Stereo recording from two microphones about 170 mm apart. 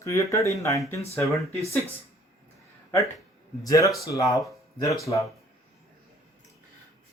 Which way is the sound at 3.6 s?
20° left (ahead or behind).